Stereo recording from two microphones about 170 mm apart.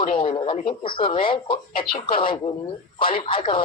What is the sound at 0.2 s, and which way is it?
Speech, 30° left (ahead or behind).